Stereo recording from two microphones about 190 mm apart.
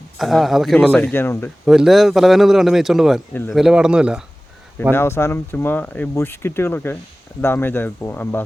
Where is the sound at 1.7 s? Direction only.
Centre (ahead or behind).